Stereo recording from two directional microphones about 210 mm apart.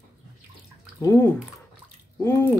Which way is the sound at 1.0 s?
15° left (ahead or behind).